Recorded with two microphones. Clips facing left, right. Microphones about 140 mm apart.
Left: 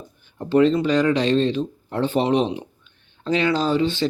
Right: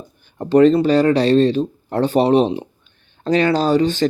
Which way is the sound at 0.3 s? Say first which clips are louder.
Right 5 dB; 45° right (ahead or behind).